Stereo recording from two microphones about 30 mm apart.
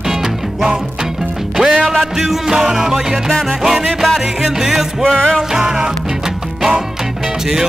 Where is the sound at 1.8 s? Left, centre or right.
Centre.